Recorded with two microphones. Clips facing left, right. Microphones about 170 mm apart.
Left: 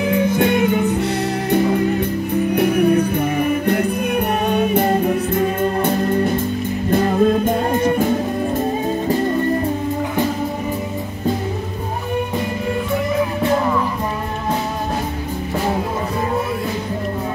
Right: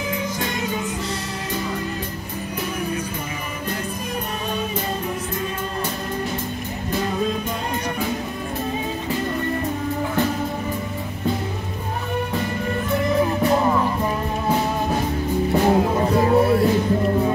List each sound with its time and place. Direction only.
0.1 s music: 60° left (ahead or behind)
4.5 s music: 60° left (ahead or behind)